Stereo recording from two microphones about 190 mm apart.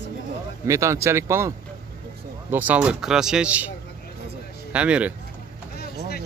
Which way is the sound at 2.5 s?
10° right (ahead or behind).